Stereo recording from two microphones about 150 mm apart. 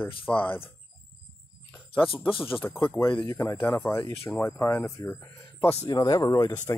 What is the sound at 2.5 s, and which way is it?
Speech, 20° left (ahead or behind).